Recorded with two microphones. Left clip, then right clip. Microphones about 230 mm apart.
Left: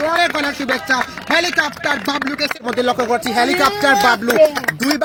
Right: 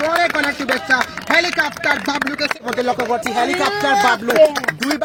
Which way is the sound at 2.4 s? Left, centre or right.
Left.